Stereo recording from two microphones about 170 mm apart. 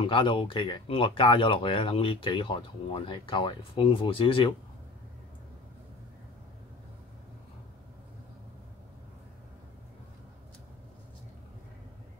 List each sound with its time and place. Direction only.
0.0 s speech: 30° left (ahead or behind)